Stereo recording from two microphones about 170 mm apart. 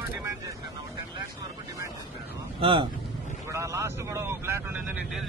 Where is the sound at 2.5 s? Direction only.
30° right (ahead or behind).